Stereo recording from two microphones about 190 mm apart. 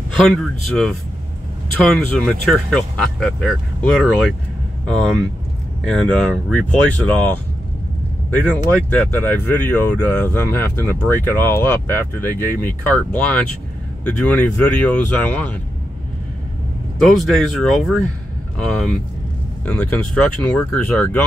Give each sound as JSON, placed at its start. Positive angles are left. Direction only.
{"t": 0.1, "sound": "speech", "side_deg": 0}
{"t": 5.9, "sound": "speech", "side_deg": 5}
{"t": 17.0, "sound": "speech", "side_deg": 0}